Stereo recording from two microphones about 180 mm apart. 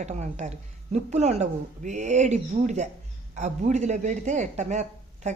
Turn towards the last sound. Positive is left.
turn(degrees=-40)  # may be behind; listen again after turning